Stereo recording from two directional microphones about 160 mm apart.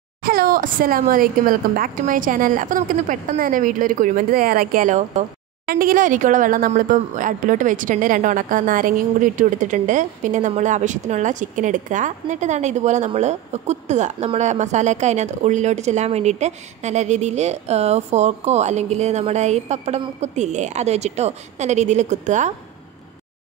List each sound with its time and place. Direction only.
0.2 s a woman's voice: 70° right (ahead or behind); by 5.2 s 50° right (ahead or behind)
5.7 s speech: 60° right (ahead or behind)